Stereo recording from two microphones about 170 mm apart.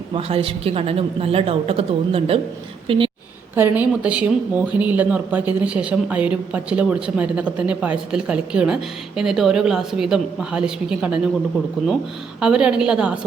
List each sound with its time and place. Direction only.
0.1 s a woman's voice: 35° right (ahead or behind)
3.5 s a woman's voice: 10° right (ahead or behind)
12.4 s a woman's voice: 5° right (ahead or behind)